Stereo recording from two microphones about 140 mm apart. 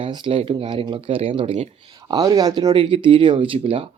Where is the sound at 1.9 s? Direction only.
25° right (ahead or behind).